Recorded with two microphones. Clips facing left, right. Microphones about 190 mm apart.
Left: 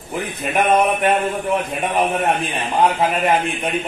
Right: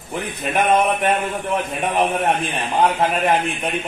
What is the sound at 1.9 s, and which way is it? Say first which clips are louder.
A man's voice: even; centre (ahead or behind).